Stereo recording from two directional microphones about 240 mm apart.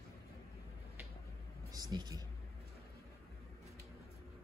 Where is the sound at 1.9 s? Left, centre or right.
Centre.